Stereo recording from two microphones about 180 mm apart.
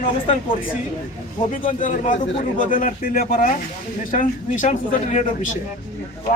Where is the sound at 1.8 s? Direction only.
45° left (ahead or behind).